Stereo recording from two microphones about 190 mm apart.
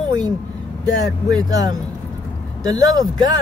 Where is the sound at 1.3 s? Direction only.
20° right (ahead or behind).